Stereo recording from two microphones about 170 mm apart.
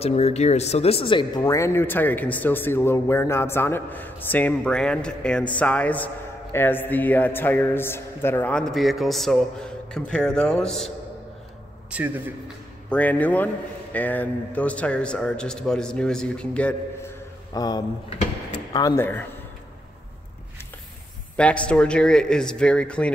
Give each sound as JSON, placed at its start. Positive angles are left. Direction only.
{"t": 0.0, "sound": "speech", "side_deg": 40}
{"t": 11.9, "sound": "a man's voice", "side_deg": -5}
{"t": 12.9, "sound": "a man's voice", "side_deg": 10}
{"t": 17.6, "sound": "speech", "side_deg": 25}
{"t": 21.4, "sound": "a man's voice", "side_deg": 5}